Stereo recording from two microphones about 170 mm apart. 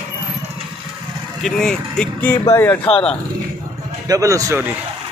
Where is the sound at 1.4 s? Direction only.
Centre (ahead or behind).